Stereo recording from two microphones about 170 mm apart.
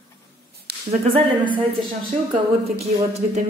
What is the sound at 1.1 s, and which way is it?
Speech, 30° right (ahead or behind).